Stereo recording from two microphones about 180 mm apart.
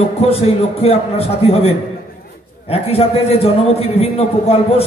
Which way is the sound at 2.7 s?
35° left (ahead or behind).